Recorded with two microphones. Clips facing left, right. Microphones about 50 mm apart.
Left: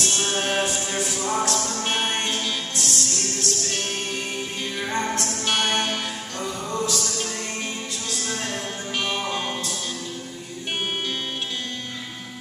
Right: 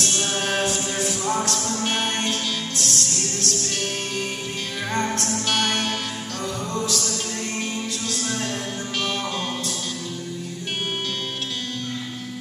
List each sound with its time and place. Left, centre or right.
0.0 s music: centre
4.9 s music: centre
8.1 s music: centre